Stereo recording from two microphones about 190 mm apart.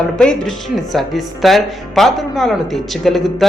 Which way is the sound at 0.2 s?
5° left (ahead or behind).